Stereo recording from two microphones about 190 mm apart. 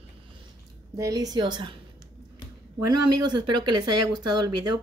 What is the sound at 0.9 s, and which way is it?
Speech, 20° right (ahead or behind).